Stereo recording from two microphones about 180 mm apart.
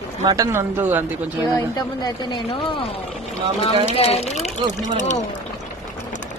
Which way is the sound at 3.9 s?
35° left (ahead or behind).